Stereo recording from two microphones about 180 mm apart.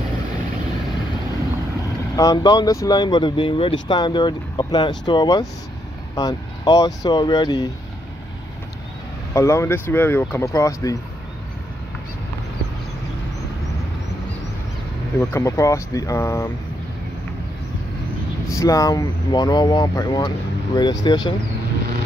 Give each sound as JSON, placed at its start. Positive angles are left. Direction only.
{"t": 2.1, "sound": "speech", "side_deg": 20}
{"t": 9.3, "sound": "speech", "side_deg": 15}
{"t": 15.1, "sound": "speech", "side_deg": 15}
{"t": 18.5, "sound": "speech", "side_deg": 20}